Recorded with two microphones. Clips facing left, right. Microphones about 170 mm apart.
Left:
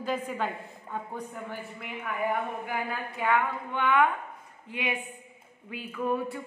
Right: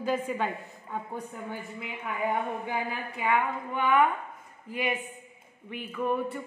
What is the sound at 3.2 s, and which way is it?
Speech, 10° right (ahead or behind).